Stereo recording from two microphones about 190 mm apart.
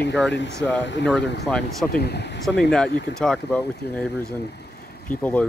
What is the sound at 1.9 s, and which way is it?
Speech, 60° left (ahead or behind).